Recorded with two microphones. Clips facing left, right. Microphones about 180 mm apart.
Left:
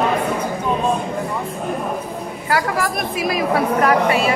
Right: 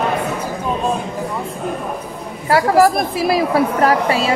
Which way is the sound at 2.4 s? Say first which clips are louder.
Right 8 dB; 30° right (ahead or behind).